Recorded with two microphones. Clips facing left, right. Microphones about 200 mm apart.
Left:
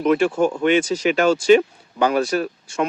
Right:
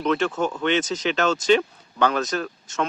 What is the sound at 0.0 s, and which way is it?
Speech, 10° left (ahead or behind).